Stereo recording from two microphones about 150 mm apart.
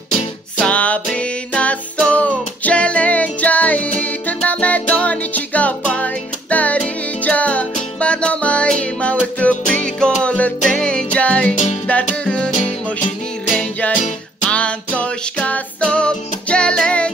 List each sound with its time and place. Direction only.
0.6 s music: 10° left (ahead or behind)
11.5 s music: 50° left (ahead or behind)
11.9 s music: 10° left (ahead or behind)
13.6 s music: 10° left (ahead or behind)